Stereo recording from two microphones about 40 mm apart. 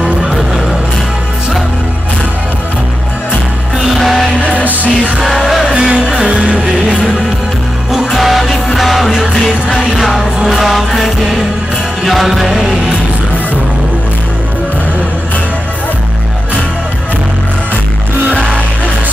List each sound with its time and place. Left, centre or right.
3.8 s music: centre
5.8 s music: right
8.1 s music: centre